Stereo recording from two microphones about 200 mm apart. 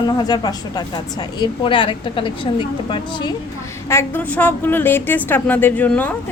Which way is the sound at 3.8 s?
10° left (ahead or behind).